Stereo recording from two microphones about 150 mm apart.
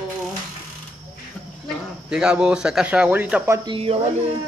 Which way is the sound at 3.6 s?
35° right (ahead or behind).